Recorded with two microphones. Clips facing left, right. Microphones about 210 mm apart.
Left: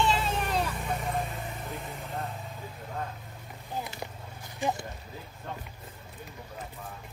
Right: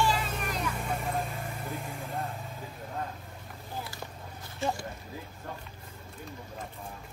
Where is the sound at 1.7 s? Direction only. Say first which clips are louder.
Right 1 dB; centre (ahead or behind).